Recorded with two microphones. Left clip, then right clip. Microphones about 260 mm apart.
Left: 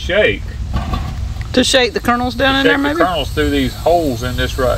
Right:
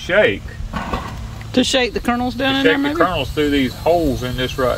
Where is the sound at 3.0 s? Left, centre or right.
Centre.